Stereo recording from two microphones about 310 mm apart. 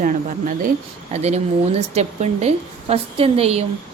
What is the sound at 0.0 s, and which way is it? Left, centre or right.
A woman's voice, right.